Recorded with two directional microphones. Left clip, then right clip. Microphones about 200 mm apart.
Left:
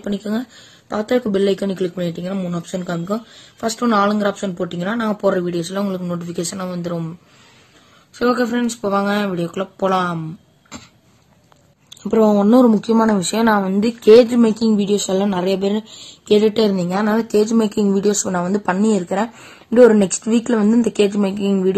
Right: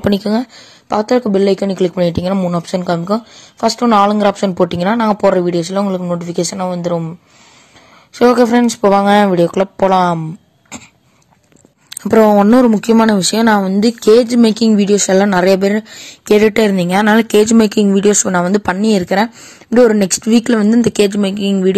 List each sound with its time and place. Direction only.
0.0 s speech: 35° right (ahead or behind)
8.1 s speech: 30° right (ahead or behind)
12.0 s speech: 35° right (ahead or behind)
14.8 s speech: 70° right (ahead or behind)
16.7 s speech: 40° right (ahead or behind)
19.0 s speech: 40° right (ahead or behind)